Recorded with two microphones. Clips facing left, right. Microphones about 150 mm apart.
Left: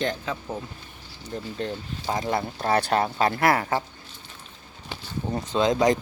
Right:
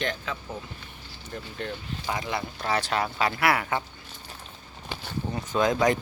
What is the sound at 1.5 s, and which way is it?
Speech, 35° left (ahead or behind).